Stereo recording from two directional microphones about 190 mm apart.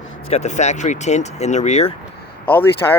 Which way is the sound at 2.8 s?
15° left (ahead or behind).